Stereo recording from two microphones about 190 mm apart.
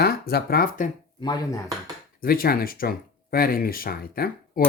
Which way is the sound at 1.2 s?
20° left (ahead or behind).